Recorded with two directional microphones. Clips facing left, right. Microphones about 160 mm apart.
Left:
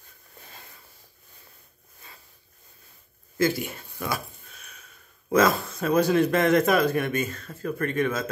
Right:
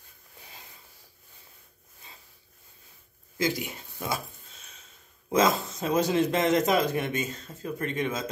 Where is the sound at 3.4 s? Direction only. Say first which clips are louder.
Left 4 dB; 15° right (ahead or behind).